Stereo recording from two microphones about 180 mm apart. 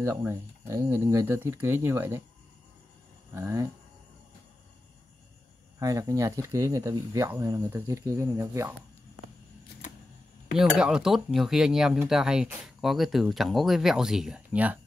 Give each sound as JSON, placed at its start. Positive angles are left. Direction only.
{"t": 0.0, "sound": "speech", "side_deg": -15}
{"t": 3.3, "sound": "speech", "side_deg": -15}
{"t": 5.8, "sound": "speech", "side_deg": -20}
{"t": 10.6, "sound": "speech", "side_deg": -5}